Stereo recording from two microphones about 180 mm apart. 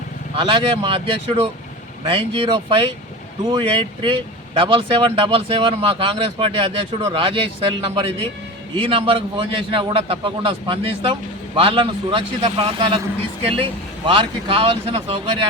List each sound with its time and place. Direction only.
0.3 s speech: 30° right (ahead or behind)
14.1 s speech: 30° right (ahead or behind)